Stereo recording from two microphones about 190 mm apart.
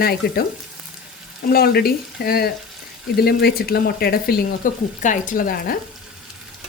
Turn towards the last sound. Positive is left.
turn(degrees=50)  # may be behind; listen again after turning